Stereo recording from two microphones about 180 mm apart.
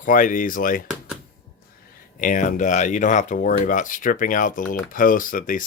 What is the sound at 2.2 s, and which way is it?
Speech, 45° left (ahead or behind).